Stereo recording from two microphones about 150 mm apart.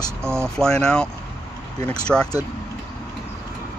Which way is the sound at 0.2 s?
15° right (ahead or behind).